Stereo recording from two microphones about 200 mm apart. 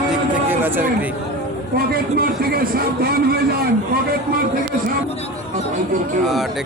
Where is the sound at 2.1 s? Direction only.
50° right (ahead or behind).